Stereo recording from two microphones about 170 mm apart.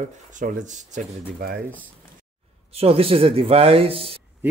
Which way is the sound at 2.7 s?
35° right (ahead or behind).